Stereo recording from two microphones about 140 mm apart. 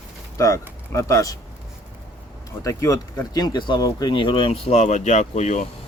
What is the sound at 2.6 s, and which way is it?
Speech, 25° left (ahead or behind).